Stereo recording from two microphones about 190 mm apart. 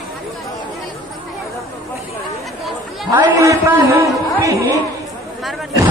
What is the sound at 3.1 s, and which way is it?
A man's voice, 15° right (ahead or behind).